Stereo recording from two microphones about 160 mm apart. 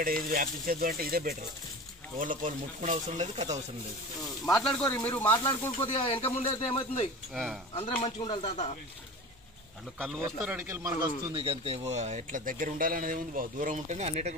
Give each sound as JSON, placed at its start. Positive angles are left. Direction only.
{"t": 0.0, "sound": "speech", "side_deg": -65}
{"t": 2.1, "sound": "speech", "side_deg": -55}
{"t": 4.5, "sound": "speech", "side_deg": 5}
{"t": 5.3, "sound": "speech", "side_deg": 25}
{"t": 10.4, "sound": "speech", "side_deg": -10}
{"t": 11.0, "sound": "speech", "side_deg": -35}